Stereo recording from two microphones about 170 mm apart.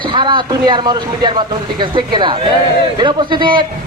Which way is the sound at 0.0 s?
30° right (ahead or behind).